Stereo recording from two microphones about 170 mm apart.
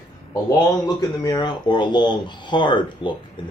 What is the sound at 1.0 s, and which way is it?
Speech, 25° left (ahead or behind).